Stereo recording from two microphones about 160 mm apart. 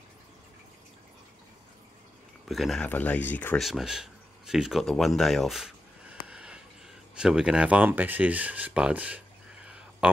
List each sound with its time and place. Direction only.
2.4 s speech: centre (ahead or behind)
3.6 s a sound: 5° right (ahead or behind)
7.2 s speech: 5° right (ahead or behind)